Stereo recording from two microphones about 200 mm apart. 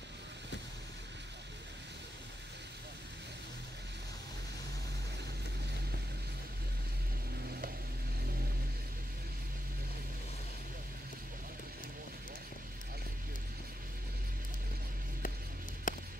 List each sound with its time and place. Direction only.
15.9 s music: 40° left (ahead or behind)